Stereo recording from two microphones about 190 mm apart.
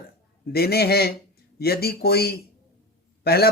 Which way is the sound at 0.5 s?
55° left (ahead or behind).